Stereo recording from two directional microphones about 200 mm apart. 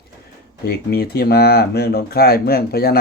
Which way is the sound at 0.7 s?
55° left (ahead or behind).